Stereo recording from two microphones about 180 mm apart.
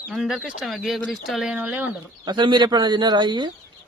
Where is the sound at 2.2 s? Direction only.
25° right (ahead or behind).